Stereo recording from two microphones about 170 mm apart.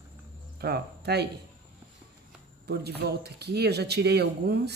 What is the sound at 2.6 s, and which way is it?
Speech, 75° right (ahead or behind).